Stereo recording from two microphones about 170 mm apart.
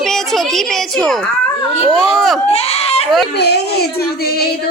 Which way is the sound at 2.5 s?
35° left (ahead or behind).